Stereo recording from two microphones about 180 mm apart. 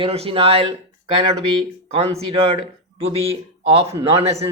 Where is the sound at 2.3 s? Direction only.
35° right (ahead or behind).